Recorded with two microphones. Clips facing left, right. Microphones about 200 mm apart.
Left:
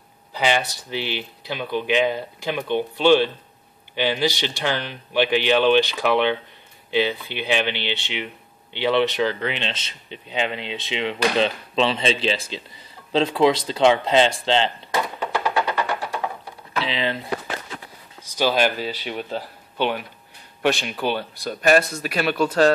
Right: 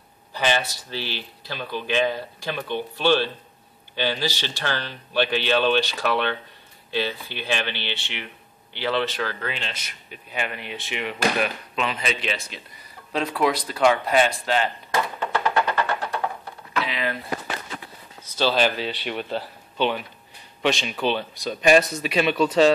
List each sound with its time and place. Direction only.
0.4 s speech: 15° left (ahead or behind)
15.1 s music: 10° left (ahead or behind)
16.7 s a sound: 25° left (ahead or behind)
18.2 s speech: 10° left (ahead or behind)
19.3 s speech: 10° left (ahead or behind)